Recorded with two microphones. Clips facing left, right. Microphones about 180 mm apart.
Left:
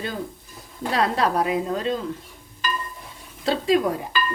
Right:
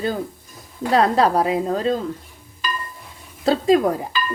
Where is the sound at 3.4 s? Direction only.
40° right (ahead or behind).